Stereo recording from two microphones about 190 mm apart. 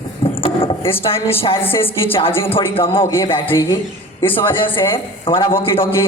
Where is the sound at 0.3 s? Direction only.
30° left (ahead or behind).